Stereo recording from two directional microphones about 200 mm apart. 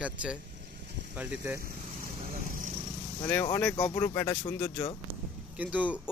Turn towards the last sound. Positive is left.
turn(degrees=-5)  # may be behind; listen again after turning